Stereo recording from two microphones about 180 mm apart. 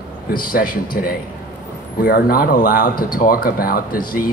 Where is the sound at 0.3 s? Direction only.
50° left (ahead or behind).